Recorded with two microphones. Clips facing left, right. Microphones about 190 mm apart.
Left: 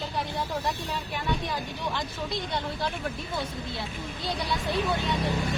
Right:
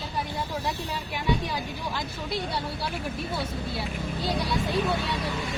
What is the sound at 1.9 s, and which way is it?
Speech, 10° right (ahead or behind).